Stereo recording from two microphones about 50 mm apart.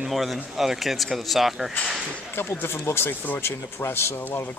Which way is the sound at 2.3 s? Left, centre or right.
Left.